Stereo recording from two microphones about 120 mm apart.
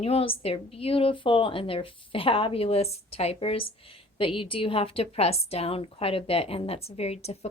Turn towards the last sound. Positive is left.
turn(degrees=60)  # may be behind; listen again after turning